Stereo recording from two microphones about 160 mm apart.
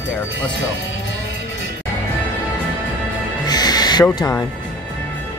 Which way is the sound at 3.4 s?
25° left (ahead or behind).